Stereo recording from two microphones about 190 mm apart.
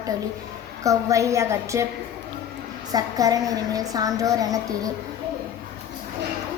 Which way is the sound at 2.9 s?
20° right (ahead or behind).